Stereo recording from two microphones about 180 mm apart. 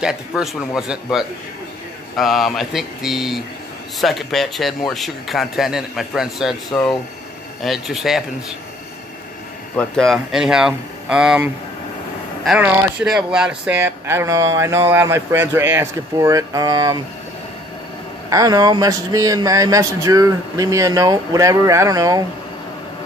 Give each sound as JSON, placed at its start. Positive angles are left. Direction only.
{"t": 0.0, "sound": "speech", "side_deg": 0}
{"t": 9.8, "sound": "speech", "side_deg": 0}
{"t": 18.3, "sound": "speech", "side_deg": -20}